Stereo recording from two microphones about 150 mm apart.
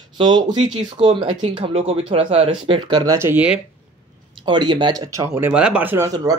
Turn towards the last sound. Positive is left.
turn(degrees=-20)  # may be behind; listen again after turning